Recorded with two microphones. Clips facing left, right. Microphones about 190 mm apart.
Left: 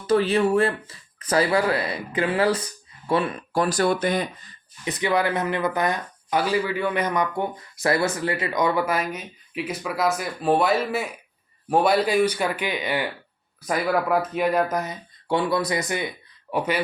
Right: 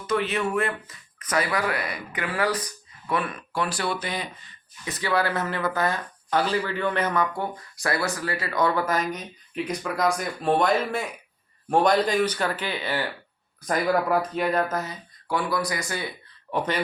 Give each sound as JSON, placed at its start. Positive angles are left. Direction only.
{"t": 0.1, "sound": "speech", "side_deg": 35}
{"t": 4.9, "sound": "speech", "side_deg": 20}
{"t": 16.5, "sound": "speech", "side_deg": 10}